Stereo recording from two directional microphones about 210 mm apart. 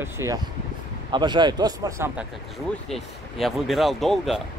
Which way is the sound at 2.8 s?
Centre (ahead or behind).